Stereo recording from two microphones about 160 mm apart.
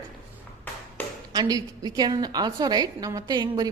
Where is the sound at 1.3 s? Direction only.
25° right (ahead or behind).